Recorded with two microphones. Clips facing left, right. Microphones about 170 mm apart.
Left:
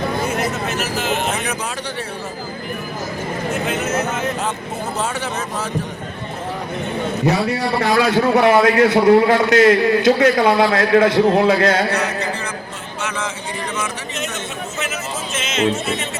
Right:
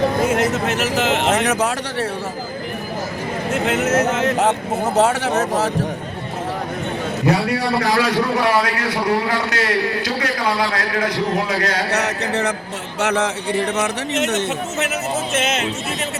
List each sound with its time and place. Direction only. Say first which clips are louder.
0.3 s speech: right 3 dB; 90° right
3.5 s speech: right 4 dB; 90° right
7.3 s a man's voice: even; 25° left (ahead or behind)
11.9 s a man's voice: even; 75° right (ahead or behind)